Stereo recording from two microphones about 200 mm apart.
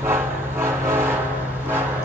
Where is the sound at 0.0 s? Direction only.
10° right (ahead or behind).